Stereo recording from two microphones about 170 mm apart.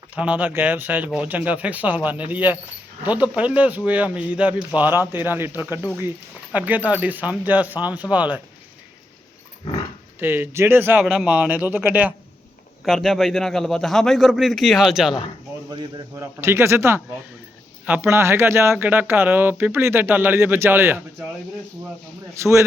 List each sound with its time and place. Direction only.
0.1 s speech: 10° right (ahead or behind)
10.2 s speech: 10° right (ahead or behind)
12.8 s a man's voice: centre (ahead or behind)
15.7 s speech: 25° right (ahead or behind)
16.2 s speech: 15° right (ahead or behind)